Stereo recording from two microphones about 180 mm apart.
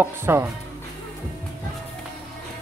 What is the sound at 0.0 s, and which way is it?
Speech, 15° right (ahead or behind).